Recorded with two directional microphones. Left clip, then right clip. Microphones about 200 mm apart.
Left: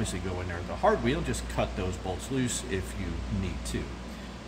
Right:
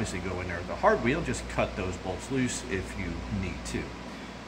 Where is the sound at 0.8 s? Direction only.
10° left (ahead or behind).